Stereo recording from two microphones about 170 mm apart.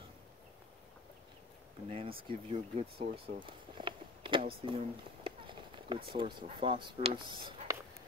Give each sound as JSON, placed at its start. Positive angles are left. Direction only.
{"t": 1.9, "sound": "speech", "side_deg": -35}
{"t": 4.6, "sound": "a sound", "side_deg": -30}
{"t": 6.0, "sound": "speech", "side_deg": -30}